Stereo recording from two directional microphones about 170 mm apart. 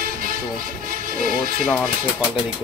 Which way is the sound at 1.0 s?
55° right (ahead or behind).